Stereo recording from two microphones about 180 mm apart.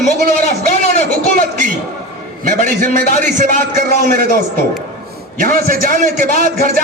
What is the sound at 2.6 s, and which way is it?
A man's voice, 45° right (ahead or behind).